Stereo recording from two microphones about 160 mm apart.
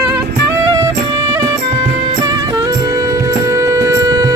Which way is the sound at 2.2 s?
25° right (ahead or behind).